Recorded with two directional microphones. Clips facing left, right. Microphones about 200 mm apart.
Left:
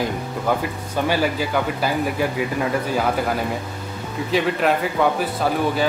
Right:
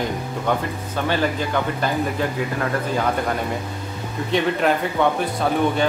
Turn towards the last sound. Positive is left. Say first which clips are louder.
# right 1 dB
turn(degrees=5)  # may be behind; listen again after turning